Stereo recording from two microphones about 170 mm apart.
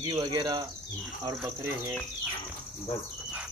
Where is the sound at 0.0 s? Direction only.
25° right (ahead or behind).